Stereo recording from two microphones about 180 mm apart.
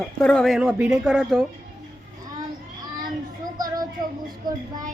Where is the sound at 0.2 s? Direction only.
5° left (ahead or behind).